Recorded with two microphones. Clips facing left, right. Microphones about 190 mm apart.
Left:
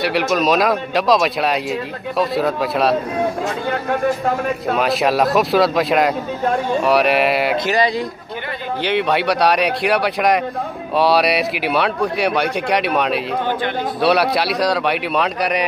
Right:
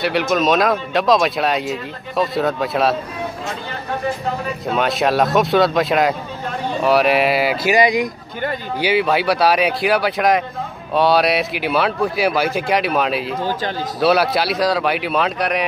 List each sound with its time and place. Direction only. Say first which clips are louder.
0.0 s speech: even; centre (ahead or behind)
4.7 s speech: right 1 dB; centre (ahead or behind)
7.7 s speech: right 2 dB; 15° right (ahead or behind)
8.8 s speech: right 1 dB; 5° right (ahead or behind)
13.4 s speech: left 2 dB; 60° left (ahead or behind)
14.0 s speech: right 1 dB; centre (ahead or behind)